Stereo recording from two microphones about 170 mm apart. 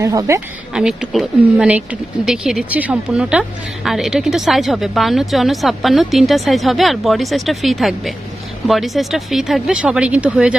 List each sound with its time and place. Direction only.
0.0 s a woman's voice: 20° right (ahead or behind)
0.7 s speech: 5° right (ahead or behind)